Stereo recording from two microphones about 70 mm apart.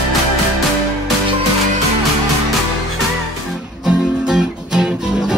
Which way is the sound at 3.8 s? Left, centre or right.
Centre.